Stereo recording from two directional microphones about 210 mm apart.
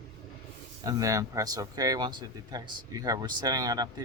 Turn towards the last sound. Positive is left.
turn(degrees=-15)  # may be behind; listen again after turning